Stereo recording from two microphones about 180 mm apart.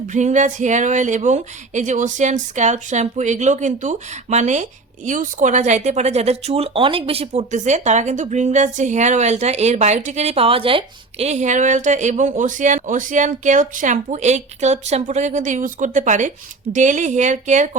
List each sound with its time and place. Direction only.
0.1 s speech: 40° right (ahead or behind)